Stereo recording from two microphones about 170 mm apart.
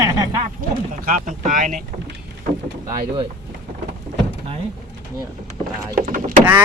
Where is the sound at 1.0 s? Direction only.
50° right (ahead or behind).